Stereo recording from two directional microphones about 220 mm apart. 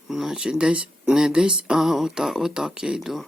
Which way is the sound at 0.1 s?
Centre (ahead or behind).